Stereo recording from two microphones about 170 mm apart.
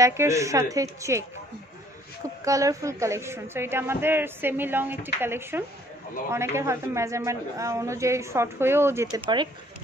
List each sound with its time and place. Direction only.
0.0 s a man's voice: 15° right (ahead or behind)
2.4 s a man's voice: 20° right (ahead or behind)
9.2 s speech: 25° right (ahead or behind)